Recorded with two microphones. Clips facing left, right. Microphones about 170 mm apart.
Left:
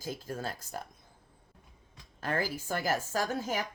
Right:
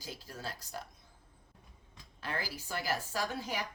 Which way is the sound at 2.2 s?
45° left (ahead or behind).